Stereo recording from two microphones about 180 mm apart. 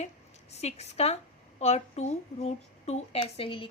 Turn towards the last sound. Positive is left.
turn(degrees=30)  # may be behind; listen again after turning